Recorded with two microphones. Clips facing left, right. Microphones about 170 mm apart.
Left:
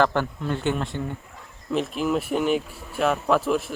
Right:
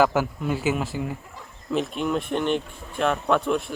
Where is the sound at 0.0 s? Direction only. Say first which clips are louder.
Right 1 dB; 5° right (ahead or behind).